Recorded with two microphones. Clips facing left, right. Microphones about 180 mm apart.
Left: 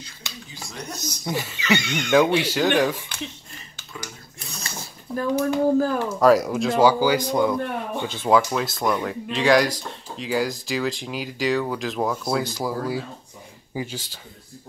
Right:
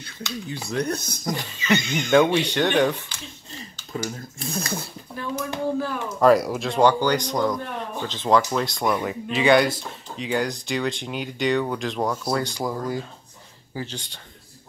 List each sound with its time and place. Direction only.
0.0 s speech: 60° right (ahead or behind)
1.6 s speech: 70° left (ahead or behind)
2.1 s speech: 5° left (ahead or behind)
3.9 s speech: 50° right (ahead or behind)
5.1 s speech: 40° left (ahead or behind)
6.1 s speech: centre (ahead or behind)